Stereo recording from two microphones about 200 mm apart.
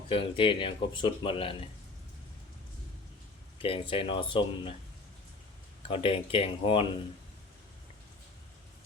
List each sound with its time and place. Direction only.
0.1 s speech: 25° left (ahead or behind)
3.6 s speech: 25° left (ahead or behind)
5.9 s speech: 25° left (ahead or behind)